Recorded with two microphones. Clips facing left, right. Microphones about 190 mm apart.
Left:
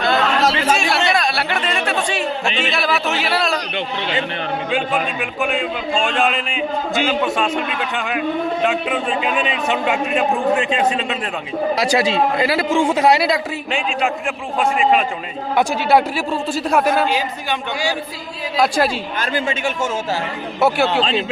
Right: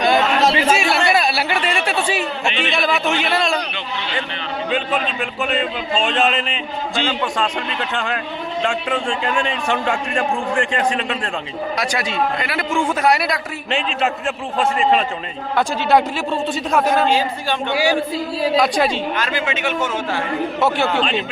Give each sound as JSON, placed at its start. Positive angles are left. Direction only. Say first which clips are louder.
{"t": 0.0, "sound": "chatter", "louder": "right 2 dB", "side_deg": -15}
{"t": 0.5, "sound": "speech", "louder": "right 1 dB", "side_deg": -10}
{"t": 1.1, "sound": "a sound", "louder": "right 1 dB", "side_deg": -5}
{"t": 2.6, "sound": "speech", "louder": "right 3 dB", "side_deg": 0}
{"t": 5.4, "sound": "a man's voice", "louder": "left 1 dB", "side_deg": 10}
{"t": 11.8, "sound": "a man's voice", "louder": "left 4 dB", "side_deg": 30}
{"t": 13.7, "sound": "a man's voice", "louder": "right 2 dB", "side_deg": 5}
{"t": 18.5, "sound": "a man's voice", "louder": "left 1 dB", "side_deg": 0}
{"t": 20.6, "sound": "a man's voice", "louder": "left 4 dB", "side_deg": 10}
{"t": 21.0, "sound": "speech", "louder": "left 1 dB", "side_deg": 35}